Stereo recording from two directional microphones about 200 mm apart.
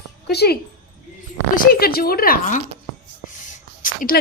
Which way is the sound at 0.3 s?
55° left (ahead or behind).